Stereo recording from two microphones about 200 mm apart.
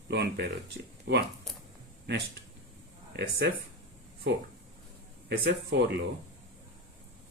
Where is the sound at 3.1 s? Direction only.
55° right (ahead or behind).